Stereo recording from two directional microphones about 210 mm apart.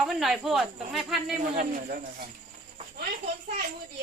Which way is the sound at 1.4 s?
40° right (ahead or behind).